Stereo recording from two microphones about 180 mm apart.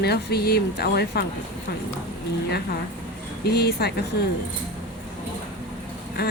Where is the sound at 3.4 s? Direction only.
65° left (ahead or behind).